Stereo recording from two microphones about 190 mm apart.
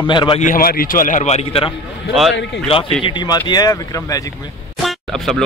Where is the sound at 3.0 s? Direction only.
20° left (ahead or behind).